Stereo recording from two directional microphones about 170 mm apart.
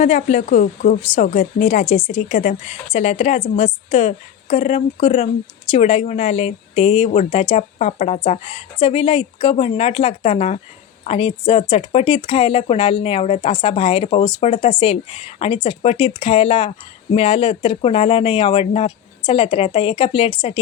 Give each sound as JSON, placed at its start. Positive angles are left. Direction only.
{"t": 0.0, "sound": "speech", "side_deg": 45}